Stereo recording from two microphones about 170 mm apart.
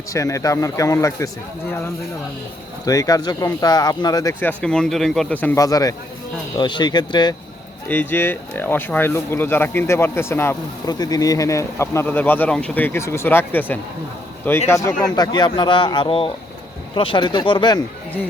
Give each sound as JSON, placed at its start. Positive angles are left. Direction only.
{"t": 0.1, "sound": "speech", "side_deg": 20}
{"t": 2.8, "sound": "speech", "side_deg": 20}
{"t": 4.4, "sound": "a man's voice", "side_deg": 5}
{"t": 5.6, "sound": "speech", "side_deg": 20}
{"t": 7.9, "sound": "speech", "side_deg": 10}
{"t": 15.0, "sound": "speech", "side_deg": 25}